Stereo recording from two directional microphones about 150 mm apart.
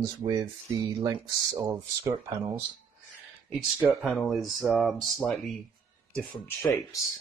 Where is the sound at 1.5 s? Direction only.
20° right (ahead or behind).